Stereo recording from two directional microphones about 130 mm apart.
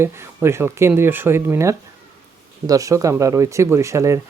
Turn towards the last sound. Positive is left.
turn(degrees=-25)  # may be behind; listen again after turning